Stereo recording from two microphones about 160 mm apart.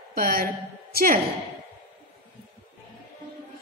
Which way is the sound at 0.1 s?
65° right (ahead or behind).